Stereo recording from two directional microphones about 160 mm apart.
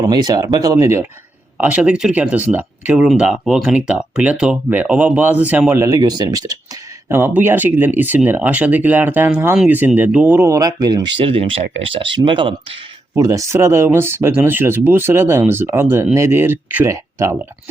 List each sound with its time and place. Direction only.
0.0 s speech: 25° right (ahead or behind)
11.2 s speech: 35° right (ahead or behind)
13.1 s speech: 20° right (ahead or behind)